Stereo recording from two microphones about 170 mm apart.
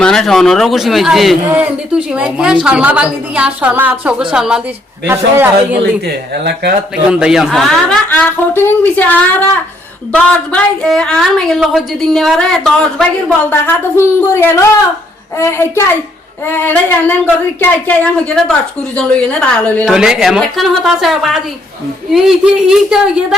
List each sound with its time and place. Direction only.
0.0 s a woman's voice: 5° left (ahead or behind); by 5.5 s 15° right (ahead or behind)
5.8 s speech: 70° right (ahead or behind)
7.1 s a woman's voice: 5° right (ahead or behind)
10.5 s a woman's voice: 5° left (ahead or behind)
19.8 s a woman's voice: 5° right (ahead or behind)